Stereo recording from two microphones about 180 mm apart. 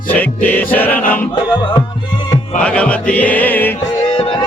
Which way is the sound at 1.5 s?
25° left (ahead or behind).